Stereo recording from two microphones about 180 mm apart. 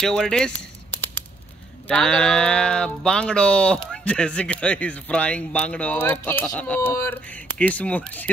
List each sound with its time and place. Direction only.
0.0 s speech: 5° left (ahead or behind)
1.9 s speech: 5° left (ahead or behind)